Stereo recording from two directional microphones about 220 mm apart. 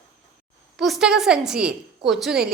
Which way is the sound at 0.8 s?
Centre (ahead or behind).